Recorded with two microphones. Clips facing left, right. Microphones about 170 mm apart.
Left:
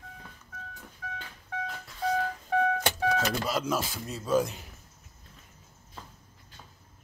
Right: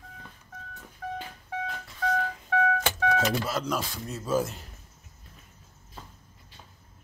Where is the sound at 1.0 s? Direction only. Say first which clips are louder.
Right 7 dB; 50° right (ahead or behind).